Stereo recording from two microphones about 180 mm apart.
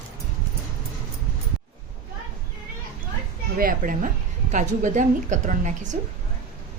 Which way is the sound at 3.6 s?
50° right (ahead or behind).